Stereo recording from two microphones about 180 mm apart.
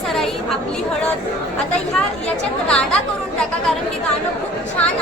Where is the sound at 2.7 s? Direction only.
5° left (ahead or behind).